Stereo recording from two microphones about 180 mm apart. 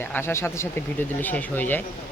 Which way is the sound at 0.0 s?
10° left (ahead or behind).